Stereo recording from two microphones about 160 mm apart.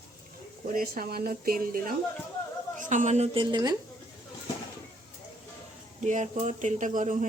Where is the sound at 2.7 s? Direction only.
50° right (ahead or behind).